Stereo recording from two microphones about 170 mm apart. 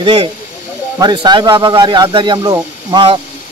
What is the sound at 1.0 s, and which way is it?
Speech, 25° right (ahead or behind).